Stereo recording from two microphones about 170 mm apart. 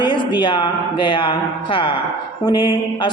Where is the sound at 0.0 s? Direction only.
25° left (ahead or behind).